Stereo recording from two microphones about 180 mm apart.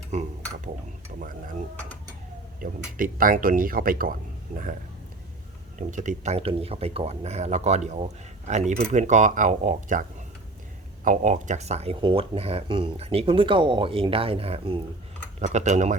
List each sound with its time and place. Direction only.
0.1 s dishes: 40° right (ahead or behind)
1.1 s speech: 45° right (ahead or behind)
2.6 s speech: 50° right (ahead or behind)
5.9 s speech: 45° right (ahead or behind)